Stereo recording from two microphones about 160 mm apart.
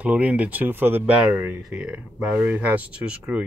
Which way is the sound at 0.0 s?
10° right (ahead or behind).